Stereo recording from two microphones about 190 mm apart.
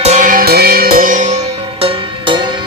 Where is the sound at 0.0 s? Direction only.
40° right (ahead or behind).